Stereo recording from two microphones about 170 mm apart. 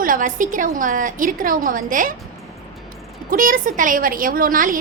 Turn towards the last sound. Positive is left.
turn(degrees=-55)  # may be behind; listen again after turning